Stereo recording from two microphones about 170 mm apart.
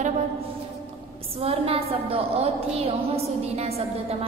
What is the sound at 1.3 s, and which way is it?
A woman's voice, 35° right (ahead or behind).